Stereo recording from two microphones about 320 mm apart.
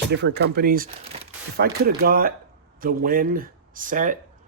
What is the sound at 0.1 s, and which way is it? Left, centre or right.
Speech, right.